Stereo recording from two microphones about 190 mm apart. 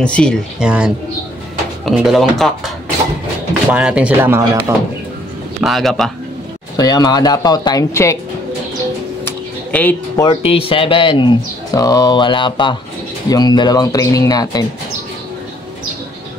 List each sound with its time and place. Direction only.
0.0 s speech: 5° left (ahead or behind)
0.7 s speech: 5° right (ahead or behind)
3.7 s speech: 5° right (ahead or behind)
5.6 s speech: centre (ahead or behind)
6.8 s speech: 20° left (ahead or behind)
9.2 s a sound: 10° left (ahead or behind)
10.2 s speech: 30° left (ahead or behind)